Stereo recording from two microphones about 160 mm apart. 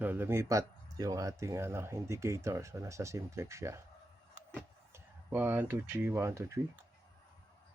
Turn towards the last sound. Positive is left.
turn(degrees=-15)  # may be behind; listen again after turning